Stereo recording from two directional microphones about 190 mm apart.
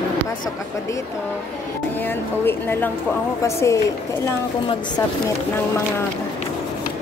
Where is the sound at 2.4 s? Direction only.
10° left (ahead or behind).